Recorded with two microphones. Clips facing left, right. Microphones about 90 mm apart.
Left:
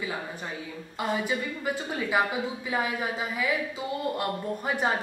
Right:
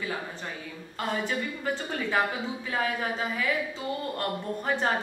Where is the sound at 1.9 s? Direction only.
10° left (ahead or behind).